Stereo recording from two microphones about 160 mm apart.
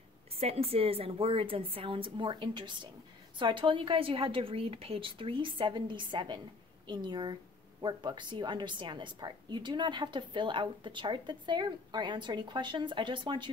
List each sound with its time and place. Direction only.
0.4 s a woman's voice: 40° right (ahead or behind)